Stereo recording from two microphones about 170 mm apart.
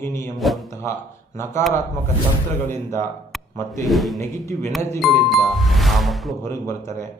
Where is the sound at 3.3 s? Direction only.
Centre (ahead or behind).